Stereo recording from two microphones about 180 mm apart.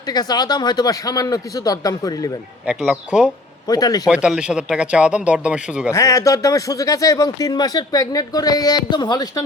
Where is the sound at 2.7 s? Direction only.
5° right (ahead or behind).